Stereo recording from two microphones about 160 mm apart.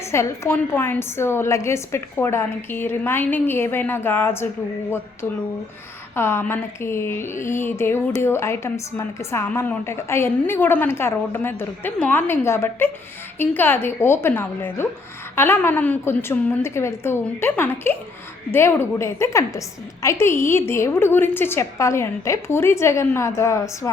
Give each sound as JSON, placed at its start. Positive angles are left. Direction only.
{"t": 0.1, "sound": "speech", "side_deg": 15}
{"t": 6.1, "sound": "speech", "side_deg": 15}